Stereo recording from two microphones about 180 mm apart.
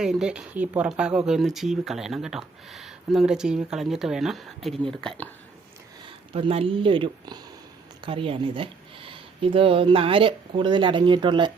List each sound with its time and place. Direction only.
0.0 s speech: 5° right (ahead or behind)
6.1 s speech: 30° right (ahead or behind)